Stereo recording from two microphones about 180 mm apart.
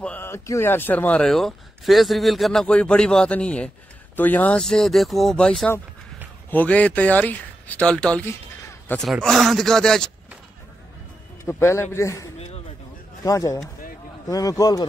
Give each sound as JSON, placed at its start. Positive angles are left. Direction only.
{"t": 0.0, "sound": "speech", "side_deg": 10}
{"t": 11.4, "sound": "a man's voice", "side_deg": 15}